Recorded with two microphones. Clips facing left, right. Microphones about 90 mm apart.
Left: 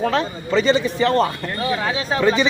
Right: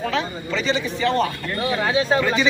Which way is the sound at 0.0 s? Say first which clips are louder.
Left 4 dB; 40° left (ahead or behind).